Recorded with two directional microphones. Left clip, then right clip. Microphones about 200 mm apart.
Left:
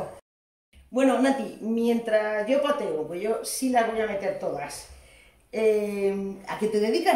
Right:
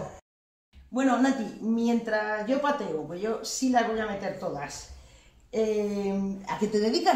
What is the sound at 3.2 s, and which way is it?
Speech, centre (ahead or behind).